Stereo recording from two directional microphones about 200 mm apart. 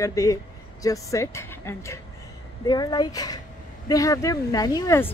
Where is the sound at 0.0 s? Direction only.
15° left (ahead or behind).